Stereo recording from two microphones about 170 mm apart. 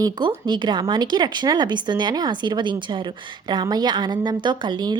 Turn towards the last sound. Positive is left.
turn(degrees=-25)  # may be behind; listen again after turning